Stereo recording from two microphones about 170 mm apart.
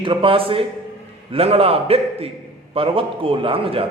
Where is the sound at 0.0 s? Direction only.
30° right (ahead or behind).